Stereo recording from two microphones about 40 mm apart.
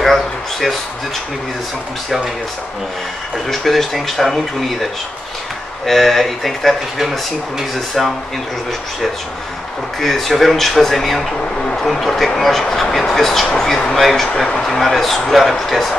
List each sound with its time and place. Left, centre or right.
0.0 s a sound: centre
3.4 s speech: centre
5.9 s speech: centre
9.9 s speech: centre